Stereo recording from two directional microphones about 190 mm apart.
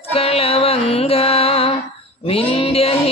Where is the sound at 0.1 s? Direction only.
30° left (ahead or behind).